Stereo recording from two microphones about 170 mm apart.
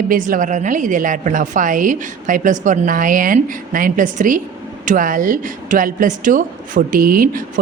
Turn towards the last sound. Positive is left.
turn(degrees=-55)  # may be behind; listen again after turning